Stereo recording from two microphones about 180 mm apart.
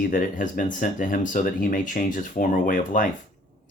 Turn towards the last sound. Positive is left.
turn(degrees=50)  # may be behind; listen again after turning